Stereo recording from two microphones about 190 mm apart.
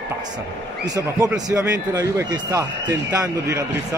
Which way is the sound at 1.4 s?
15° right (ahead or behind).